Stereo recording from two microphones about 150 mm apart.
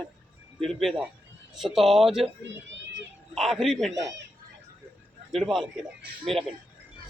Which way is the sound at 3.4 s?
Centre (ahead or behind).